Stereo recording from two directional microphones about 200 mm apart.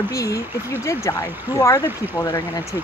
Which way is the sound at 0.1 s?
15° left (ahead or behind).